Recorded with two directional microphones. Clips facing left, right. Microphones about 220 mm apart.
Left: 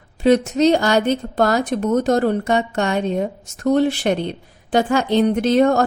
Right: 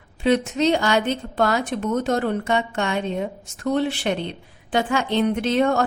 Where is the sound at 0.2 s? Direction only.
40° left (ahead or behind).